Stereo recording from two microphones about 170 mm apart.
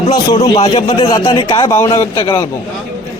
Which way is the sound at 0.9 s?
25° left (ahead or behind).